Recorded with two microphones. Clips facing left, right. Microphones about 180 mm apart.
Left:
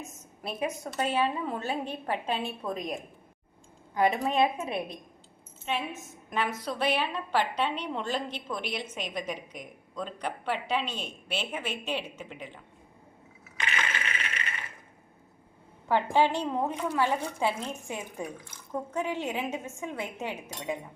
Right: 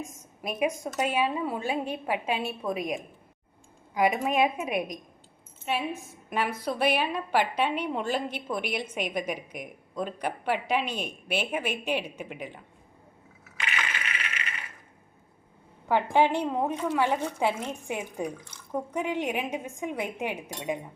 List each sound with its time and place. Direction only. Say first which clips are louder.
0.0 s a woman's voice: right 3 dB; 10° right (ahead or behind)
15.9 s a woman's voice: right 2 dB; 15° right (ahead or behind)